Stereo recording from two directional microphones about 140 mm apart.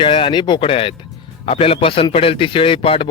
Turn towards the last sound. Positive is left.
turn(degrees=40)  # may be behind; listen again after turning